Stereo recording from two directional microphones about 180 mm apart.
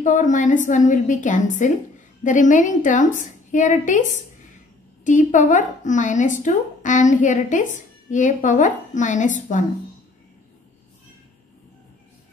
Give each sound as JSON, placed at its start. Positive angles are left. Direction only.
{"t": 0.0, "sound": "speech", "side_deg": 45}